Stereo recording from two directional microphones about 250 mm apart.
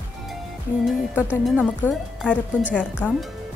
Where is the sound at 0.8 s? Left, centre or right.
Centre.